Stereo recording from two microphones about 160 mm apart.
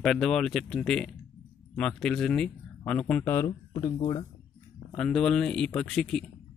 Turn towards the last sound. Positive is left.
turn(degrees=5)  # may be behind; listen again after turning